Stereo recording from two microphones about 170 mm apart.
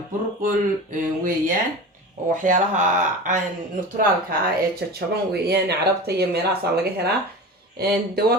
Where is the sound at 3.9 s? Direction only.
60° right (ahead or behind).